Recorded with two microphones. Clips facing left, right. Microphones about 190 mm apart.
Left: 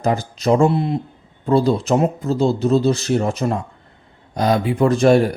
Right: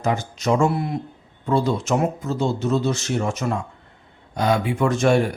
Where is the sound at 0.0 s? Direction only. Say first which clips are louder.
Left 4 dB; 35° left (ahead or behind).